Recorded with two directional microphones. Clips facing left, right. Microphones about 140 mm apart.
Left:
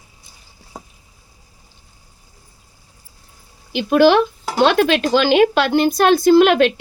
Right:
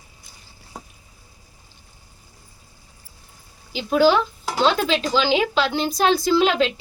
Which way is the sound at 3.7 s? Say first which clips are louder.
Left 5 dB; 70° left (ahead or behind).